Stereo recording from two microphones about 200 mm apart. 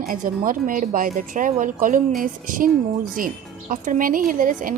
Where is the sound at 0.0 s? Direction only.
45° right (ahead or behind).